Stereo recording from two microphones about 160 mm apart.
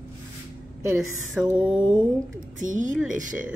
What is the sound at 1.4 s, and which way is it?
Speech, 10° right (ahead or behind).